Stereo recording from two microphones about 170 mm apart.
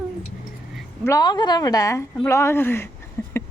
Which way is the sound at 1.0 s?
20° left (ahead or behind).